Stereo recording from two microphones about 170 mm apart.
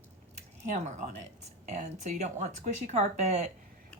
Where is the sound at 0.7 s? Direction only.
50° right (ahead or behind).